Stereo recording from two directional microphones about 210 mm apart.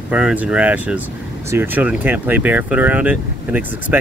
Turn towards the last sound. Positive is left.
turn(degrees=-10)  # may be behind; listen again after turning